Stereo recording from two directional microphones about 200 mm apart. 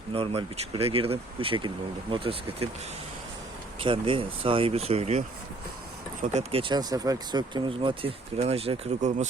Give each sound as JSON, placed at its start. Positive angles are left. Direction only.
{"t": 0.1, "sound": "speech", "side_deg": -30}
{"t": 3.8, "sound": "speech", "side_deg": -25}
{"t": 6.3, "sound": "speech", "side_deg": -30}